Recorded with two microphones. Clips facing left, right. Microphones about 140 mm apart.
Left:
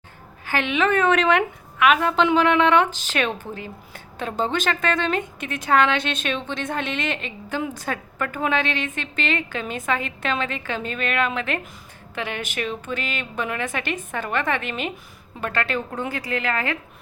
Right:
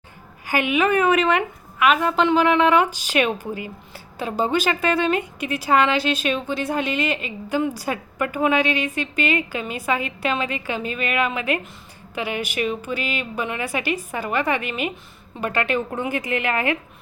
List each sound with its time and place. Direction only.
0.4 s a woman's voice: 10° right (ahead or behind)